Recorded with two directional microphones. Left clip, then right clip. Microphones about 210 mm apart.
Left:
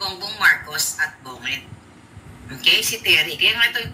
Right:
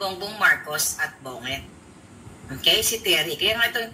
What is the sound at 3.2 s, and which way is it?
Speech, 15° right (ahead or behind).